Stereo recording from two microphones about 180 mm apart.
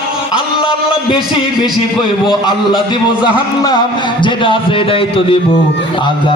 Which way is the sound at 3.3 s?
25° left (ahead or behind).